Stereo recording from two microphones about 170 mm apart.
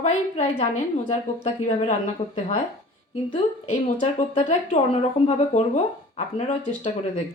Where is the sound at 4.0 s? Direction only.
40° left (ahead or behind).